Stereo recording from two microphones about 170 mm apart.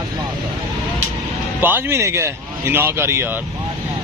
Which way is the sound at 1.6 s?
10° right (ahead or behind).